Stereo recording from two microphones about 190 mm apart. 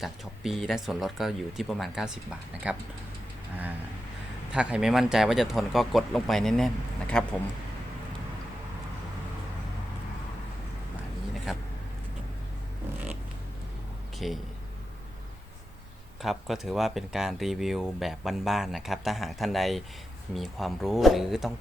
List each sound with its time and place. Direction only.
0.0 s speech: centre (ahead or behind)
4.5 s speech: 5° right (ahead or behind)
11.5 s speech: centre (ahead or behind)
14.2 s speech: centre (ahead or behind)
16.2 s speech: centre (ahead or behind)